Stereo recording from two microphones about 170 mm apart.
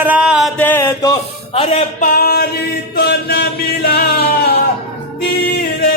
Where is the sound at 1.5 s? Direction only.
35° left (ahead or behind).